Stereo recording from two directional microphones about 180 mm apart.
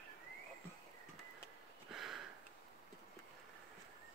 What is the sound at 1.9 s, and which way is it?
Sniff, centre (ahead or behind).